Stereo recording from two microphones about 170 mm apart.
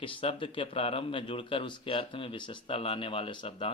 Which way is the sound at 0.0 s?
30° left (ahead or behind).